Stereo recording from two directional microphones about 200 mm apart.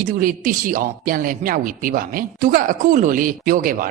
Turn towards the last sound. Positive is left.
turn(degrees=-45)  # may be behind; listen again after turning